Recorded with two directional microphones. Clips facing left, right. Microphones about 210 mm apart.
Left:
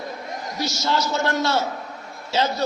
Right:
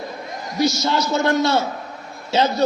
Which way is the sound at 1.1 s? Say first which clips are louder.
Right 4 dB; 15° right (ahead or behind).